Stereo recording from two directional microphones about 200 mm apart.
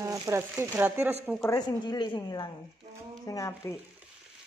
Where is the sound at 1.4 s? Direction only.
20° left (ahead or behind).